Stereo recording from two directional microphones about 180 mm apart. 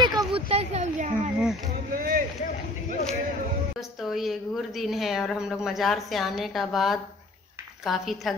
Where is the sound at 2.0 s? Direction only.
50° right (ahead or behind).